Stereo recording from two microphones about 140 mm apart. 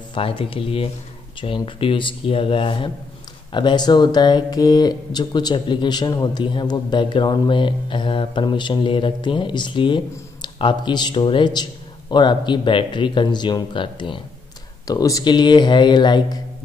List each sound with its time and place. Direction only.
0.1 s a man's voice: 40° left (ahead or behind)
14.9 s a man's voice: 25° left (ahead or behind)